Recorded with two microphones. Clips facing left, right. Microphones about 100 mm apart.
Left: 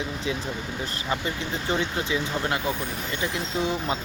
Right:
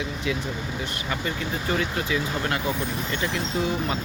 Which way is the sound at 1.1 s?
20° left (ahead or behind).